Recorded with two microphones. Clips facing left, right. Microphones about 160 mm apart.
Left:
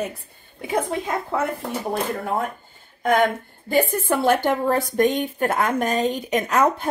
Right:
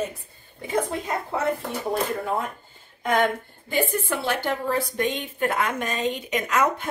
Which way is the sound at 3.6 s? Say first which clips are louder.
Left 5 dB; 45° left (ahead or behind).